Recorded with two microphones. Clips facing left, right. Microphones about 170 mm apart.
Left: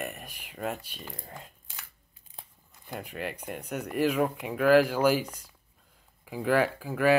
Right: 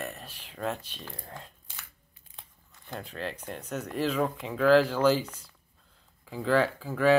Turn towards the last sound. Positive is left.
turn(degrees=10)  # may be behind; listen again after turning